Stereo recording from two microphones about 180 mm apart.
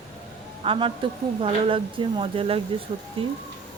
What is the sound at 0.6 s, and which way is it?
Speech, 30° right (ahead or behind).